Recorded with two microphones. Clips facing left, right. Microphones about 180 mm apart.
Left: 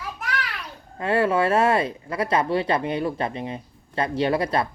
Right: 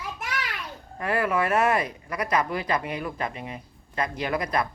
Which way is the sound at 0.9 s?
25° left (ahead or behind).